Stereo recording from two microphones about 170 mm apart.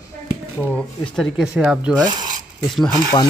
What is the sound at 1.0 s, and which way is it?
Speech, centre (ahead or behind).